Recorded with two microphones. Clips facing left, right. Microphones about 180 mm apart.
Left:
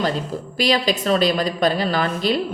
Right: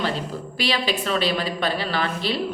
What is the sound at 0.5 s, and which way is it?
A woman's voice, 40° left (ahead or behind).